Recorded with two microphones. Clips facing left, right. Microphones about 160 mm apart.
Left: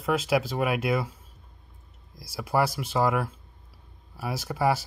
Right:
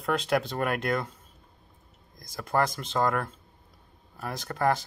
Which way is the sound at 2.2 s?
10° left (ahead or behind).